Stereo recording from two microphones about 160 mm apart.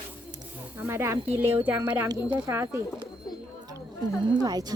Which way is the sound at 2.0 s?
25° right (ahead or behind).